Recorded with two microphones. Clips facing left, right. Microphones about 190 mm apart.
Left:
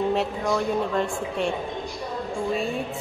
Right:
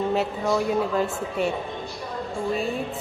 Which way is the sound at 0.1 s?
5° right (ahead or behind).